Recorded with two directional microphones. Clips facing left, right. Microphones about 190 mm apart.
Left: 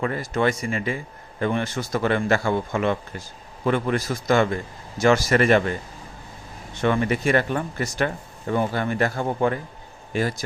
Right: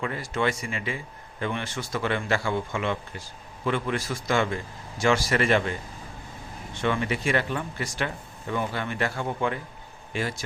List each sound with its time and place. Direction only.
0.0 s speech: 45° left (ahead or behind)
6.8 s speech: 45° left (ahead or behind)